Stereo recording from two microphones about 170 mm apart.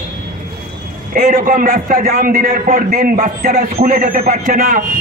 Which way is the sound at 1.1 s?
55° right (ahead or behind).